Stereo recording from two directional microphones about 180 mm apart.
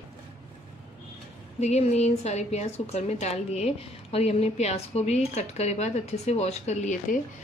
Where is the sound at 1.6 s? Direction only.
35° left (ahead or behind).